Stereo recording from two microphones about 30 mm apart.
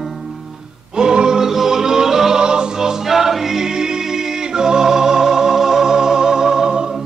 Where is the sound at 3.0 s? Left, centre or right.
Centre; by 6.9 s right.